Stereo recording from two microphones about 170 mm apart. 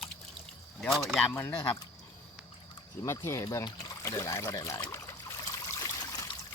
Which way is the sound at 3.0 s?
15° left (ahead or behind).